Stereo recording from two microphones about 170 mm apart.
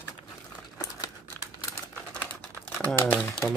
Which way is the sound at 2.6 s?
10° left (ahead or behind).